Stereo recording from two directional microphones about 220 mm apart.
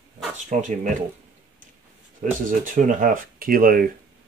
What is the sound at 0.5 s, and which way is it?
Speech, 35° right (ahead or behind).